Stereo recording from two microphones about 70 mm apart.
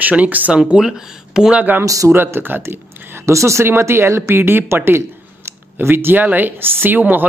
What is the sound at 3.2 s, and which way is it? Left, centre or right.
A man's voice, right.